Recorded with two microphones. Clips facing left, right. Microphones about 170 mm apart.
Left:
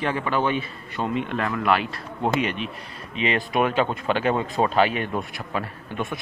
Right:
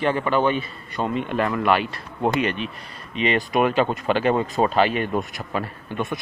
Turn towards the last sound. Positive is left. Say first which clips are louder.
# right 2 dB
turn(degrees=0)  # may be behind; listen again after turning